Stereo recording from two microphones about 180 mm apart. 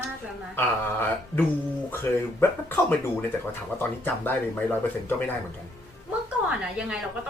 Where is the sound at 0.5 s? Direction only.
10° left (ahead or behind).